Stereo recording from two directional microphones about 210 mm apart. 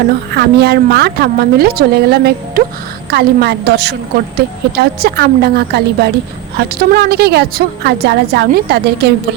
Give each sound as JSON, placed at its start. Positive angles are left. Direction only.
{"t": 0.3, "sound": "a woman's voice", "side_deg": -50}